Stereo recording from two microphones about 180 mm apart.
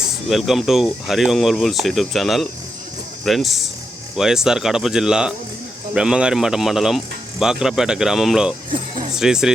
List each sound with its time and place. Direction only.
0.3 s speech: centre (ahead or behind)
8.7 s music: 30° right (ahead or behind)
9.1 s speech: 5° right (ahead or behind)